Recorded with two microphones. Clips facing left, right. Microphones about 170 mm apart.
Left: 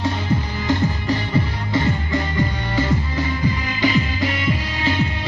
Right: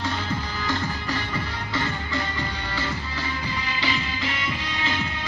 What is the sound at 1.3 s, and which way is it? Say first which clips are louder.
Music: left 8 dB; 30° left (ahead or behind).